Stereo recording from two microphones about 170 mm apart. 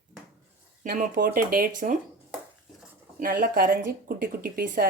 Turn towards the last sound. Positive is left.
turn(degrees=-55)  # may be behind; listen again after turning